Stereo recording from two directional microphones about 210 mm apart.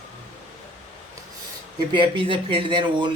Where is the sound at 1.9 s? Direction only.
25° right (ahead or behind).